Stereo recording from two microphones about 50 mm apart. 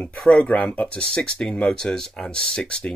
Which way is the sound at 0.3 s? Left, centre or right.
Left.